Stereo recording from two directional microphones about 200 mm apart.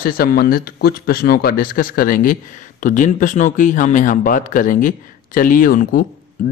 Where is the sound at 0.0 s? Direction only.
45° left (ahead or behind).